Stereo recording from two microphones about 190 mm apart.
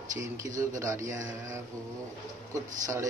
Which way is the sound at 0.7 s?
15° right (ahead or behind).